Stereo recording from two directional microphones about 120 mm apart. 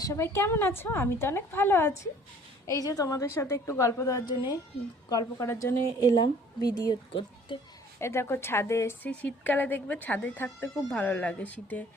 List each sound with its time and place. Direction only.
0.0 s a woman's voice: 20° left (ahead or behind)
2.6 s a woman's voice: 30° left (ahead or behind)
5.5 s a woman's voice: 20° left (ahead or behind)
6.0 s speech: 35° left (ahead or behind)
7.9 s a woman's voice: 20° left (ahead or behind)
9.0 s speech: 15° left (ahead or behind)